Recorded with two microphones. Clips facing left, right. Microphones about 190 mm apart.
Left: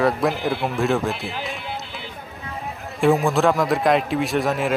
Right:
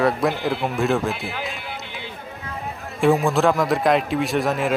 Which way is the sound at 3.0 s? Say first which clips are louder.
Even; centre (ahead or behind).